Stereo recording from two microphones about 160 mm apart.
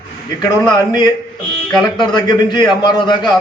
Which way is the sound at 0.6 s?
25° left (ahead or behind).